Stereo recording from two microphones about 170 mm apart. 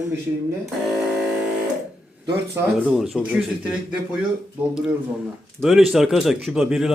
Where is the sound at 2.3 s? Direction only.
15° right (ahead or behind).